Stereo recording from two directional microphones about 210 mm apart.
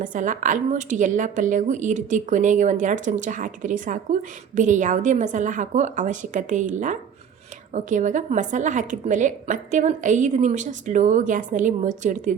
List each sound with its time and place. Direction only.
0.0 s a woman's voice: 40° right (ahead or behind)